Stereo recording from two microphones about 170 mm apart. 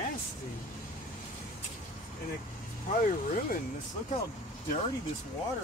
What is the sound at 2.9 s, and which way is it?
Speech, 55° left (ahead or behind).